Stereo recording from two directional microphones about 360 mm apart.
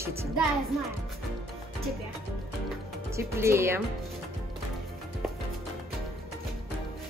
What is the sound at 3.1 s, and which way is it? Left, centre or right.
Speech, centre.